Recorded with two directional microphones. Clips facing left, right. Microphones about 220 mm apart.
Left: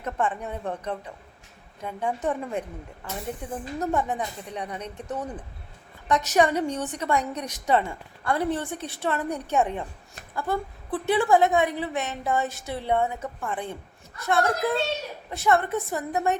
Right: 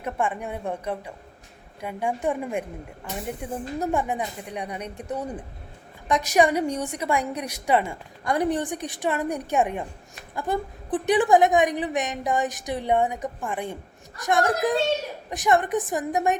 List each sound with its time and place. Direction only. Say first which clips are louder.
0.0 s a woman's voice: right 1 dB; 10° right (ahead or behind)